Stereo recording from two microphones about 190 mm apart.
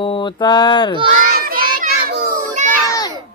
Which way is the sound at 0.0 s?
25° left (ahead or behind).